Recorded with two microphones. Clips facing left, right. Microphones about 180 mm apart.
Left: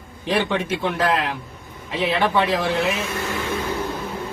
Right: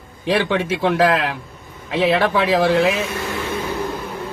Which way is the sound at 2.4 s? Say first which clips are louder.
Right 5 dB; 80° right.